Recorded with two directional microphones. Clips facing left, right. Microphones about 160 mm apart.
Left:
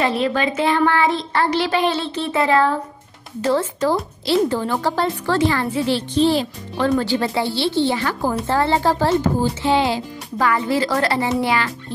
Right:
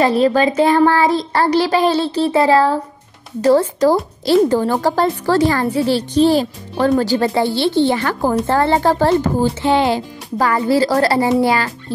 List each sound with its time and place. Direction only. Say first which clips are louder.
0.0 s speech: right 6 dB; 40° right (ahead or behind)